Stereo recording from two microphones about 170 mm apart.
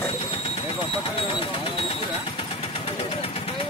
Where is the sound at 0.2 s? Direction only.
35° left (ahead or behind).